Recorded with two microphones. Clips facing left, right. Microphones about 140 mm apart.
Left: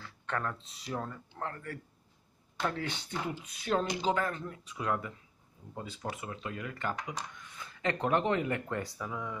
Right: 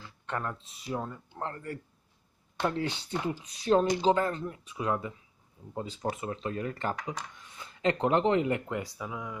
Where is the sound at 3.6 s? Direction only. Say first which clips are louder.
Right 6 dB; 25° right (ahead or behind).